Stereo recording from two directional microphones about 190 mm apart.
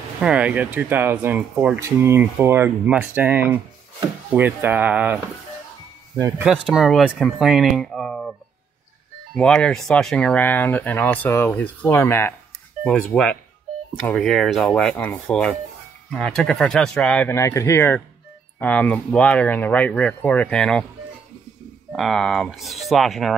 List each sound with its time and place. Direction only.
0.2 s speech: 5° right (ahead or behind)
6.4 s speech: 5° right (ahead or behind)
21.9 s speech: centre (ahead or behind)